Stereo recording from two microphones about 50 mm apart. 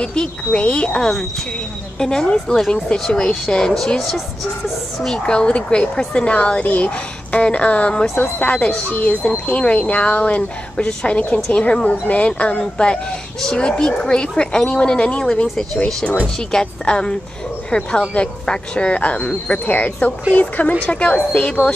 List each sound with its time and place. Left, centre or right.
0.0 s a woman's voice: centre
5.0 s a woman's voice: centre
10.9 s a woman's voice: centre
15.4 s speech: centre
15.8 s a woman's voice: centre